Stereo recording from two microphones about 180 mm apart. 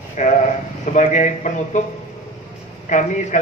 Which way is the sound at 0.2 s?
45° left (ahead or behind).